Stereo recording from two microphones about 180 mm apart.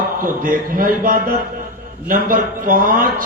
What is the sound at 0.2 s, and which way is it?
A man's voice, 50° right (ahead or behind).